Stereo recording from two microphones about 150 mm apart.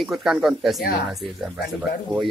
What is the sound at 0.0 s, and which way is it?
Speech, centre (ahead or behind).